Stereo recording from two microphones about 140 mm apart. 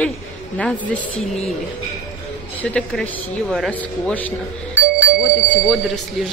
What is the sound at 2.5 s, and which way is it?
A man's voice, 10° left (ahead or behind).